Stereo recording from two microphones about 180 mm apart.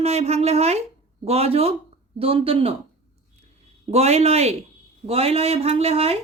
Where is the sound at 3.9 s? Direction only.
35° right (ahead or behind).